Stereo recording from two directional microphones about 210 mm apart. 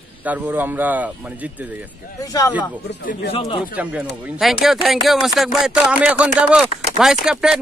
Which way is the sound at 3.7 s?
5° right (ahead or behind).